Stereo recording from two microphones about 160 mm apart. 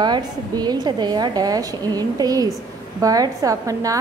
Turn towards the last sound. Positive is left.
turn(degrees=-20)  # may be behind; listen again after turning